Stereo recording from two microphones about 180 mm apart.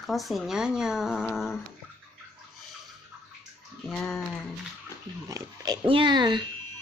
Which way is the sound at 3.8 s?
10° left (ahead or behind).